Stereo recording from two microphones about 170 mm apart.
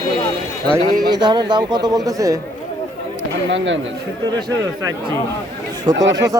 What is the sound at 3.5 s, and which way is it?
Speech, 90° right.